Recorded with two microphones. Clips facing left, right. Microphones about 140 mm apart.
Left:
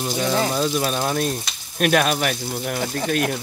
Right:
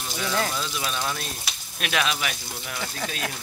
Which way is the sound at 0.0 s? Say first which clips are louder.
Left 6 dB; 35° left (ahead or behind).